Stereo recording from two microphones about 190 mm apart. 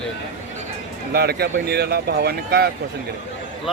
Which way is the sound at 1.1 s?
55° right (ahead or behind).